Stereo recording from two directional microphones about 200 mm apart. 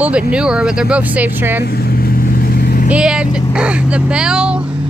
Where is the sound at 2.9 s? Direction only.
5° right (ahead or behind).